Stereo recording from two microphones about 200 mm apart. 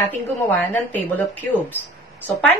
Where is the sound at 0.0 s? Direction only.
10° left (ahead or behind).